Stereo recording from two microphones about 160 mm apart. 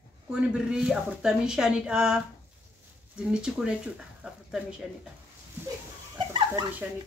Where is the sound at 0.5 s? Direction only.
5° right (ahead or behind).